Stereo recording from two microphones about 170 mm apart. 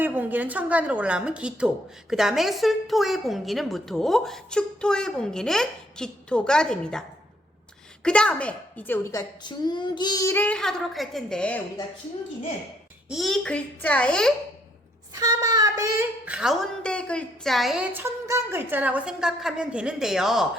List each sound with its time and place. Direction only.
0.0 s a woman's voice: 10° right (ahead or behind)
8.0 s speech: 5° left (ahead or behind)
9.4 s speech: 25° left (ahead or behind); by 11.6 s 5° left (ahead or behind)
13.1 s a woman's voice: centre (ahead or behind)
15.1 s a woman's voice: 20° right (ahead or behind); by 17.8 s centre (ahead or behind)
17.9 s a woman's voice: 15° right (ahead or behind)